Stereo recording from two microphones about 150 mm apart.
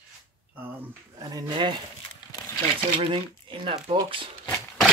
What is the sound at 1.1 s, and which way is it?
Speech, 25° right (ahead or behind).